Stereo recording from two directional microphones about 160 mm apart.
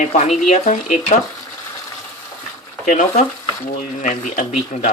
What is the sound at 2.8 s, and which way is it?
Speech, 55° left (ahead or behind).